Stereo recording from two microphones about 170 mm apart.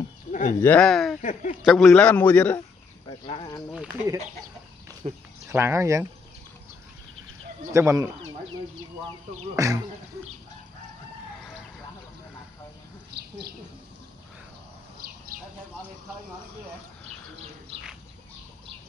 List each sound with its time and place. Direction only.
0.3 s a sound: 50° left (ahead or behind)
0.6 s speech: 10° left (ahead or behind)
1.2 s speech: 45° left (ahead or behind)
1.6 s speech: centre (ahead or behind)
1.9 s a man's voice: 10° left (ahead or behind)
3.1 s speech: 25° left (ahead or behind)
5.0 s speech: 40° right (ahead or behind)
5.5 s speech: 15° right (ahead or behind)
7.7 s speech: 20° right (ahead or behind)
9.6 s speech: 20° right (ahead or behind)